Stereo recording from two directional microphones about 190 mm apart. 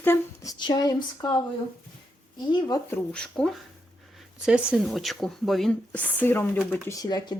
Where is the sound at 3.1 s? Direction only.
5° left (ahead or behind).